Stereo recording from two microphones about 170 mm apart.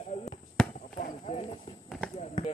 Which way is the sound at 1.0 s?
45° left (ahead or behind).